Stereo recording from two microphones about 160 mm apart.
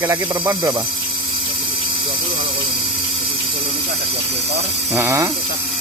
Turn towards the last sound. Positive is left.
turn(degrees=-20)  # may be behind; listen again after turning